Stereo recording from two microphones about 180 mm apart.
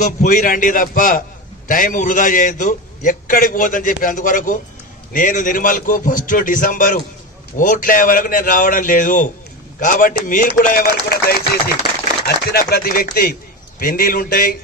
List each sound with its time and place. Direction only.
0.0 s a man's voice: 45° left (ahead or behind)